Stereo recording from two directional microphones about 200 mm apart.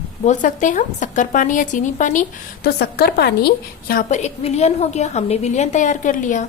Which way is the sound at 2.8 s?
55° left (ahead or behind).